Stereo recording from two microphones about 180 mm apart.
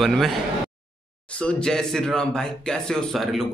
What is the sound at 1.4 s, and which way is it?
Speech, 5° left (ahead or behind).